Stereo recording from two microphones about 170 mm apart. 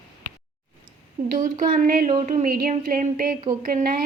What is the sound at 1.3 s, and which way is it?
A woman's voice, 55° right (ahead or behind).